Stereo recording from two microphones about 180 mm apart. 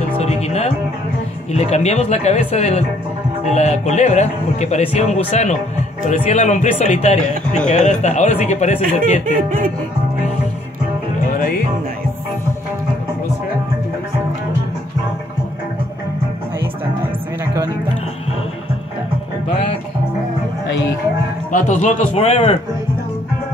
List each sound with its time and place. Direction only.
0.2 s music: 35° left (ahead or behind)
1.5 s a man's voice: 40° left (ahead or behind)
8.8 s speech: 50° right (ahead or behind)
11.2 s music: 50° left (ahead or behind)
21.5 s a man's voice: 45° left (ahead or behind)